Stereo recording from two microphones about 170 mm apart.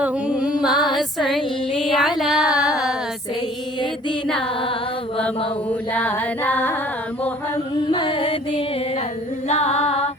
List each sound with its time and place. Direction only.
0.0 s music: 5° right (ahead or behind)
5.9 s music: 10° left (ahead or behind)
7.9 s music: 30° left (ahead or behind)